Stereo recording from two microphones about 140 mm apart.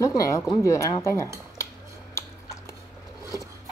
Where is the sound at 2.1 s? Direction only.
20° left (ahead or behind).